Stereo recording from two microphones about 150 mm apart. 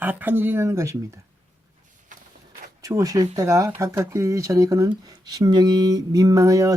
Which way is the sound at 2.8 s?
20° right (ahead or behind).